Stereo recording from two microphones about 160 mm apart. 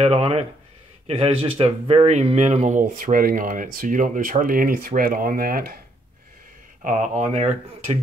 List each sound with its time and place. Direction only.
0.0 s speech: 40° right (ahead or behind); by 5.8 s 65° right (ahead or behind)
6.8 s speech: 50° right (ahead or behind)